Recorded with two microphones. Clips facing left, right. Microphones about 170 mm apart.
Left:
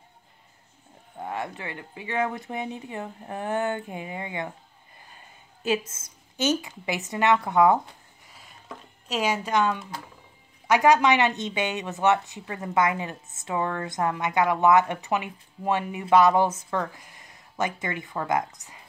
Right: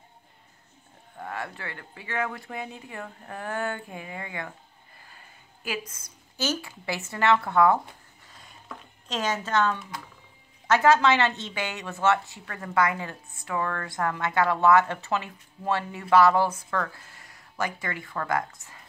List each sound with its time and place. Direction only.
1.1 s a woman's voice: 20° left (ahead or behind)
5.6 s a woman's voice: 25° left (ahead or behind)
8.3 s a sound: 5° left (ahead or behind)
9.0 s a woman's voice: 10° left (ahead or behind)